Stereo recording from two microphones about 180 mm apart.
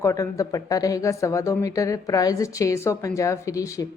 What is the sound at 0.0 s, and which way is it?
A woman's voice, 20° left (ahead or behind).